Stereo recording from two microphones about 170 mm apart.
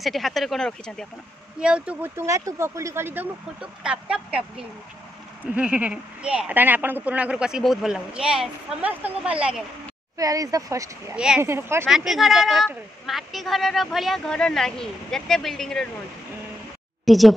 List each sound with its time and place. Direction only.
0.0 s a woman's voice: centre (ahead or behind)
10.1 s speech: 20° right (ahead or behind)
11.1 s speech: 5° right (ahead or behind)
11.8 s a woman's voice: centre (ahead or behind)
17.0 s speech: centre (ahead or behind)